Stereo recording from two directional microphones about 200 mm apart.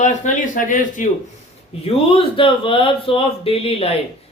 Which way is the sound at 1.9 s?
25° left (ahead or behind).